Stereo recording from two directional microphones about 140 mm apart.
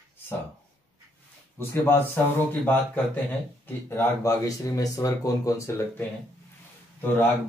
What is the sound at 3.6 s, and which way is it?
Speech, 15° left (ahead or behind).